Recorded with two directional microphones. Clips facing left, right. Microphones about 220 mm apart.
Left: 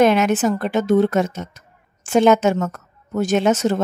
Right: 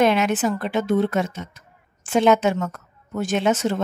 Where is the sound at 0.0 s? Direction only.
45° left (ahead or behind).